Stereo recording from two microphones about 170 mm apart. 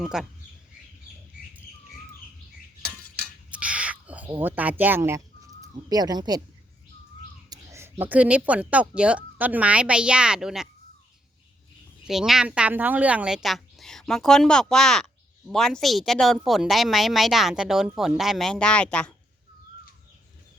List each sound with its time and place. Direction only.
0.0 s speech: 5° right (ahead or behind)
3.5 s a sound: 5° right (ahead or behind)
4.3 s speech: 10° right (ahead or behind)
7.5 s speech: 15° right (ahead or behind)
12.0 s speech: centre (ahead or behind)